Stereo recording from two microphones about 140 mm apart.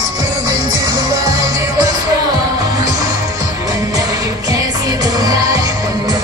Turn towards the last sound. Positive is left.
turn(degrees=-25)  # may be behind; listen again after turning